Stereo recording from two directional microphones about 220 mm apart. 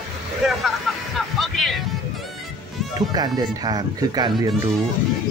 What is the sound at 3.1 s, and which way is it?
Speech, 20° right (ahead or behind).